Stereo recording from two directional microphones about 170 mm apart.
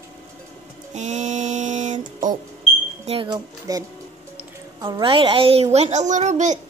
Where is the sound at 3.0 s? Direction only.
30° right (ahead or behind).